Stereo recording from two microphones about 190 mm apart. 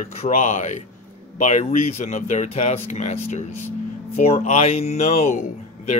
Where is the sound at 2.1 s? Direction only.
35° left (ahead or behind).